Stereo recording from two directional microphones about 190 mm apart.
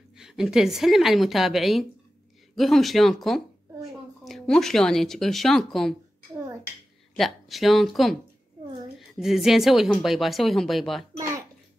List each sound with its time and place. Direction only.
0.2 s speech: centre (ahead or behind)
6.3 s a sound: 15° right (ahead or behind)
7.2 s speech: centre (ahead or behind)